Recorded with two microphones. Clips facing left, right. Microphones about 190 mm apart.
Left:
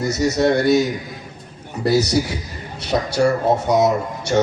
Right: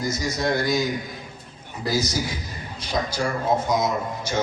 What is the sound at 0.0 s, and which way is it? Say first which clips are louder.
A man's voice: left 8 dB; 70° left (ahead or behind).